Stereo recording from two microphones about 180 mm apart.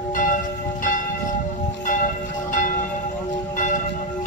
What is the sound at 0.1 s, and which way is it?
Church bell, 45° left (ahead or behind).